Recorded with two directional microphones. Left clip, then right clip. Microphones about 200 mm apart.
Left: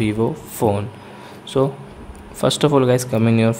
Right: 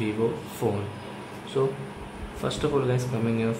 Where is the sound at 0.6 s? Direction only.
50° left (ahead or behind).